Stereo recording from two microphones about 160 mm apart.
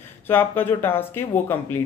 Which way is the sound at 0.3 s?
15° left (ahead or behind).